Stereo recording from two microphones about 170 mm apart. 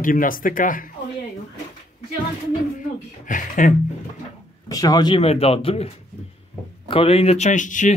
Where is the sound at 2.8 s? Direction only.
50° left (ahead or behind).